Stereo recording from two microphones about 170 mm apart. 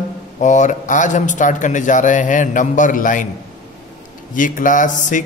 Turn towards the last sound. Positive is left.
turn(degrees=50)  # may be behind; listen again after turning